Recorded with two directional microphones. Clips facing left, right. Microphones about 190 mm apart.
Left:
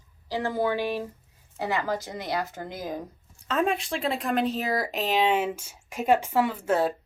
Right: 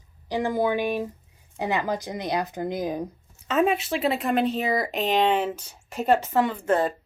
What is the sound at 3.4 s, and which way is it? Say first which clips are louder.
A woman's voice: right 3 dB; 5° right (ahead or behind).